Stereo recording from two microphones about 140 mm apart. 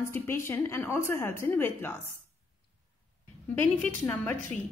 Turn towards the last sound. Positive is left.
turn(degrees=15)  # may be behind; listen again after turning